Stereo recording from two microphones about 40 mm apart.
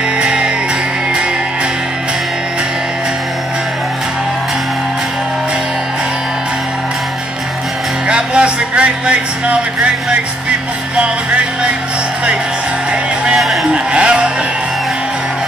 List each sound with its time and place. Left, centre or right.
0.2 s music: right
8.1 s music: right
11.0 s music: right
13.4 s a sound: centre
13.7 s sheep: right